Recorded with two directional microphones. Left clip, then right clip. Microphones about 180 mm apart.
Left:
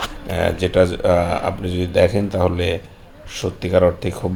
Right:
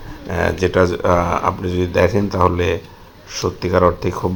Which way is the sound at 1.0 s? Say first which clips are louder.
Right 1 dB; centre (ahead or behind).